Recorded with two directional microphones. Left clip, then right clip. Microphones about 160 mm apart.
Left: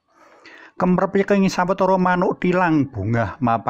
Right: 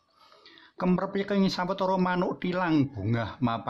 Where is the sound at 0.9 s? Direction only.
40° left (ahead or behind).